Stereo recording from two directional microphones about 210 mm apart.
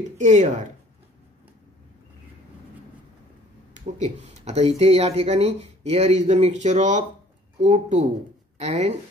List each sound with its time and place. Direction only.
0.2 s speech: 35° right (ahead or behind)
3.7 s speech: 35° right (ahead or behind)